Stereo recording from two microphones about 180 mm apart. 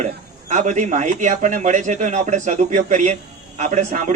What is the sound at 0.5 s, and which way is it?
A man's voice, 45° right (ahead or behind).